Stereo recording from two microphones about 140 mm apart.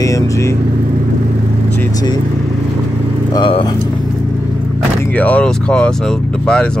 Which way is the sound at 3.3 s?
40° left (ahead or behind).